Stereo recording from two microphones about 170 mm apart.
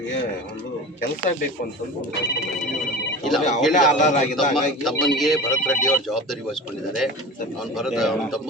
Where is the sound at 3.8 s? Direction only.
45° left (ahead or behind).